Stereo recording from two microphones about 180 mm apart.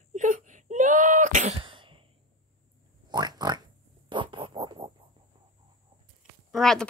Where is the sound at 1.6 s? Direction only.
30° right (ahead or behind).